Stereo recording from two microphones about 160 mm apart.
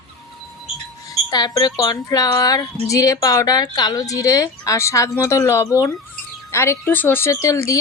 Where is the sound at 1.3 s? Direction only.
25° left (ahead or behind).